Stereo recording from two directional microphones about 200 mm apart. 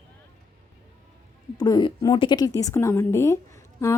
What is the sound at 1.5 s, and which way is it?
A woman's voice, 20° left (ahead or behind).